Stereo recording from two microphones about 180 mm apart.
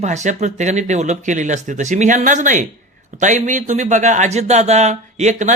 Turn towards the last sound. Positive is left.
turn(degrees=-40)  # may be behind; listen again after turning